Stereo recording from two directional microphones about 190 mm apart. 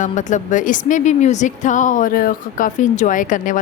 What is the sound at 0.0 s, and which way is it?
A woman's voice, 40° left (ahead or behind).